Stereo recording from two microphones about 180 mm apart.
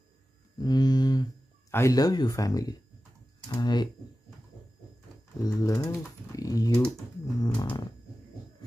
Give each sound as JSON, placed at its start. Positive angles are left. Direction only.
{"t": 0.6, "sound": "speech", "side_deg": 20}
{"t": 5.4, "sound": "speech", "side_deg": 20}